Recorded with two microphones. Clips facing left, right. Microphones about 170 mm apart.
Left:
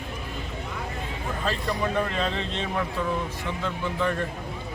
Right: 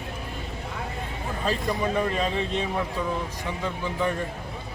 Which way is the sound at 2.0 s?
10° right (ahead or behind).